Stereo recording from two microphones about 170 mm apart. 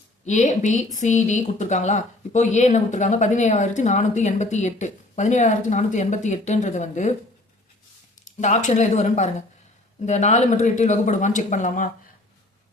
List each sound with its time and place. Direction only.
0.3 s a woman's voice: 45° left (ahead or behind)
8.2 s a woman's voice: 45° left (ahead or behind)